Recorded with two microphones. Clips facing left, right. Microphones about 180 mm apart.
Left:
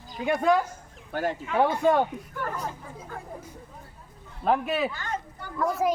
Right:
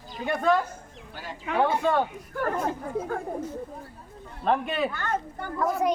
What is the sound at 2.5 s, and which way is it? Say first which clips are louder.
Speech: right 7 dB; 60° right (ahead or behind).